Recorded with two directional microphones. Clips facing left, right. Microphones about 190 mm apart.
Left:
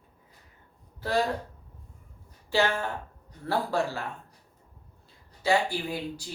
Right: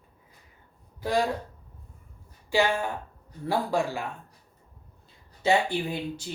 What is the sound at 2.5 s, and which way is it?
Speech, 15° right (ahead or behind).